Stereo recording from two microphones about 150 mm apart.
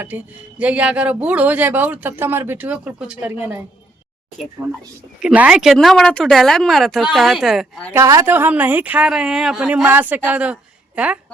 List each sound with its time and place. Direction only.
0.6 s a man's voice: 10° right (ahead or behind)
4.6 s a man's voice: 10° right (ahead or behind)
7.9 s speech: 25° right (ahead or behind)
8.3 s a man's voice: 10° right (ahead or behind)